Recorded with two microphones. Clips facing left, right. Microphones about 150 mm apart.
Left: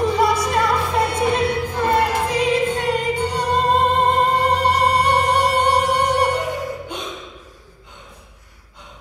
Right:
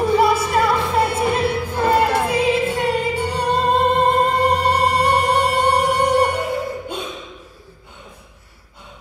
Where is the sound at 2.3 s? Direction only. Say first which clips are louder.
Right 1 dB; 10° right (ahead or behind).